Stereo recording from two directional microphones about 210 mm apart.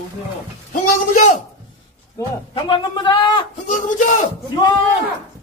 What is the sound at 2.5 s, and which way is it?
Speech, 25° left (ahead or behind).